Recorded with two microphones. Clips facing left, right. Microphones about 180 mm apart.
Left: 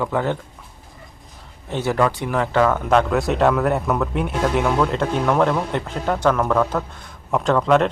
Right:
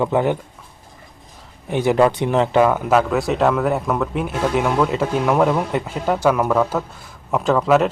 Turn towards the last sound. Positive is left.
turn(degrees=-5)  # may be behind; listen again after turning